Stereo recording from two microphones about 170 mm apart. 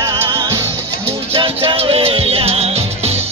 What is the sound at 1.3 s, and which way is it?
Music, 30° right (ahead or behind).